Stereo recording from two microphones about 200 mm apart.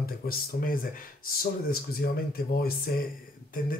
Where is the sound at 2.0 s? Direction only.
50° left (ahead or behind).